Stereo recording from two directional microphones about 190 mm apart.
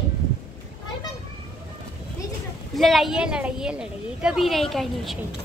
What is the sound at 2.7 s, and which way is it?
A woman's voice, centre (ahead or behind).